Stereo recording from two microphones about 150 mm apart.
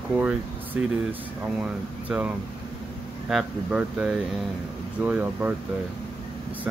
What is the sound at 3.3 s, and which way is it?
Speech, 5° right (ahead or behind).